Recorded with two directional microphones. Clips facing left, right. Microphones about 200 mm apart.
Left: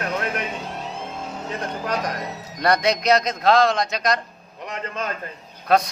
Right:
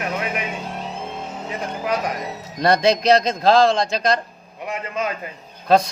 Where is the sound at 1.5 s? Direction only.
10° right (ahead or behind).